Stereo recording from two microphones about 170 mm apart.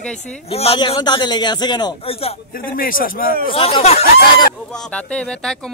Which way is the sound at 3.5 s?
35° left (ahead or behind).